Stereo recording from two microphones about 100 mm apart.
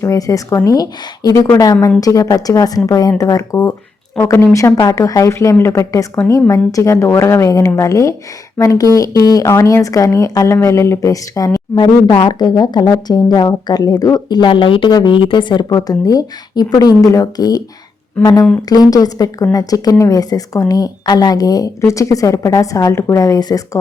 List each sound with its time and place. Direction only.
0.0 s a woman's voice: 35° left (ahead or behind)